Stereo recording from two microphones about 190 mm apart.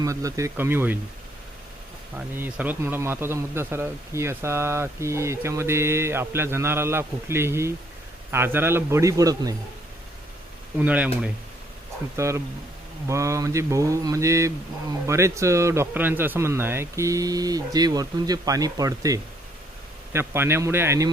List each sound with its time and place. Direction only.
0.0 s speech: 15° right (ahead or behind)
2.1 s speech: 10° right (ahead or behind)
10.8 s speech: 10° right (ahead or behind)
12.1 s speech: 15° right (ahead or behind)